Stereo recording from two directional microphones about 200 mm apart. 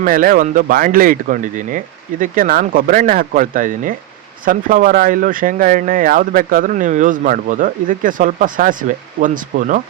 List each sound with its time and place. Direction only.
0.0 s speech: 45° right (ahead or behind)